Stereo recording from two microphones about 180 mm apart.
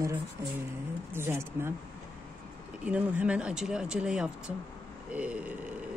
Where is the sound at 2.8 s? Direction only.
5° right (ahead or behind).